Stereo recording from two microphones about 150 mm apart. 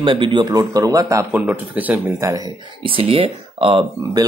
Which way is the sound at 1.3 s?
10° right (ahead or behind).